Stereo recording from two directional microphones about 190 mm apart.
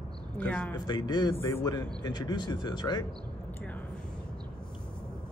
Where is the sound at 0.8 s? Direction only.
25° left (ahead or behind).